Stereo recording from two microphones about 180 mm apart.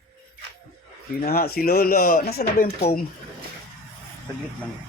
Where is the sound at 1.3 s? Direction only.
60° left (ahead or behind).